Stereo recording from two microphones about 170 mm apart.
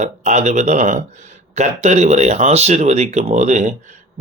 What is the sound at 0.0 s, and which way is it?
A man's voice, 45° right (ahead or behind).